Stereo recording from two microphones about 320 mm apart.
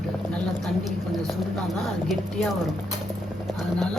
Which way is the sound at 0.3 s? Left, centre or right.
Centre.